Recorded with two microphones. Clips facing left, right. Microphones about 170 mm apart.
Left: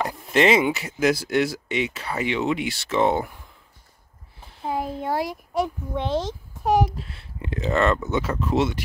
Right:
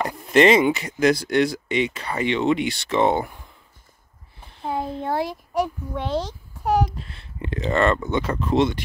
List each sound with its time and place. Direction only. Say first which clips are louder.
0.0 s speech: right 3 dB; centre (ahead or behind)
4.6 s a child's voice: even; 10° left (ahead or behind)
6.9 s speech: left 1 dB; 5° left (ahead or behind)